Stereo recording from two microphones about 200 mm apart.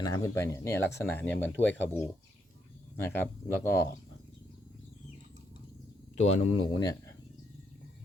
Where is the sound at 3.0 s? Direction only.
10° left (ahead or behind).